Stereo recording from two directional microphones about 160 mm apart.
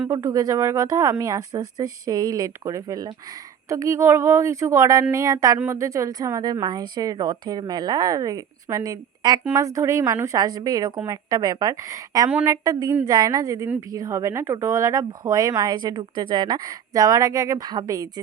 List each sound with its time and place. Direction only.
0.1 s a woman's voice: 20° right (ahead or behind)